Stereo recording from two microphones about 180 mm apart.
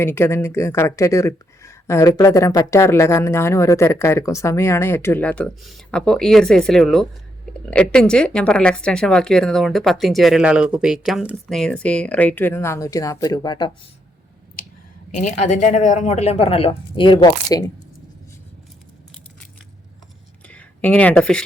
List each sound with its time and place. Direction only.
0.0 s speech: 15° left (ahead or behind)
15.1 s speech: 45° left (ahead or behind); by 17.6 s 25° left (ahead or behind)
20.5 s speech: 5° left (ahead or behind)